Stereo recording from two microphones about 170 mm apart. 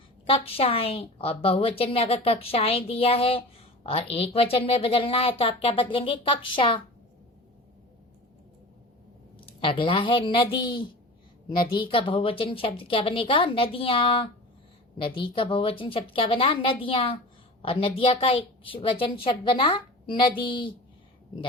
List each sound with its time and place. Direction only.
0.3 s a woman's voice: 35° left (ahead or behind)
9.5 s a woman's voice: 30° left (ahead or behind)